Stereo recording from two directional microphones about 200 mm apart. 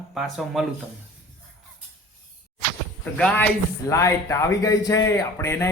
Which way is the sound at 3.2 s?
5° left (ahead or behind).